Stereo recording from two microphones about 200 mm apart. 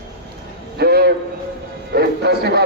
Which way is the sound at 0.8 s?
50° right (ahead or behind).